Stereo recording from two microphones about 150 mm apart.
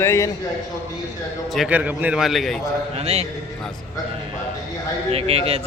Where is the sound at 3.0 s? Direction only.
45° right (ahead or behind).